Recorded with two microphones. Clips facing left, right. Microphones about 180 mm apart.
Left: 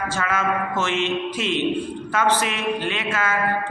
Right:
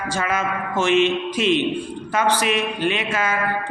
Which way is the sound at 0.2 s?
15° right (ahead or behind).